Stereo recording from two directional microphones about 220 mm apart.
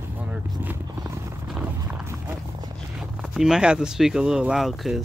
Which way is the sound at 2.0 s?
10° right (ahead or behind).